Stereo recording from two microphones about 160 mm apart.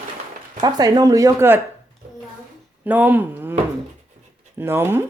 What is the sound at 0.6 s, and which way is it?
Speech, 25° right (ahead or behind).